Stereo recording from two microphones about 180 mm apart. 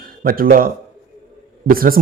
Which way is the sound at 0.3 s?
55° right (ahead or behind).